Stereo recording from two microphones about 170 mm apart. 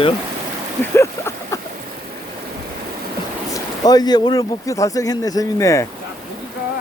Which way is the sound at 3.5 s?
25° left (ahead or behind).